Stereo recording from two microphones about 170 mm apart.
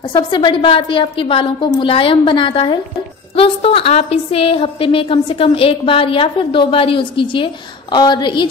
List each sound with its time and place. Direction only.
0.1 s a woman's voice: 30° left (ahead or behind)